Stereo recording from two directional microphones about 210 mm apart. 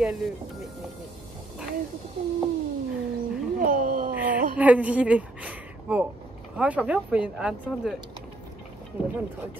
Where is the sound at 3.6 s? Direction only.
40° right (ahead or behind).